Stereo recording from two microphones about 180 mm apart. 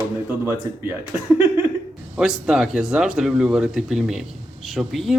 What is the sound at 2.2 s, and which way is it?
Speech, 5° right (ahead or behind).